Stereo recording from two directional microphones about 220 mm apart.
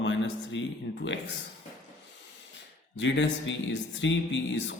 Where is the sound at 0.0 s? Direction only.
55° left (ahead or behind).